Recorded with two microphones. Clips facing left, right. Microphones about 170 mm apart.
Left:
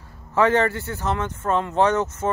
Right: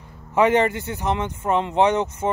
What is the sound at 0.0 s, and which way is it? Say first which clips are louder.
A man's voice: right 1 dB; 15° right (ahead or behind).